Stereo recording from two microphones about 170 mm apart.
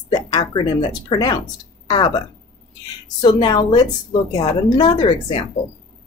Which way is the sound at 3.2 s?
25° left (ahead or behind).